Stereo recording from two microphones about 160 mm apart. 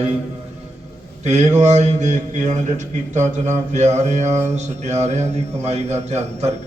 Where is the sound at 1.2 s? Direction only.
45° right (ahead or behind).